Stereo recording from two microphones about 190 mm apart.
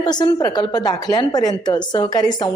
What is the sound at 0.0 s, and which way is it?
A woman's voice, 20° left (ahead or behind).